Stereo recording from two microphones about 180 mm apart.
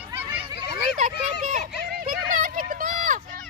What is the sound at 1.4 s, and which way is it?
Children playing, 45° right (ahead or behind).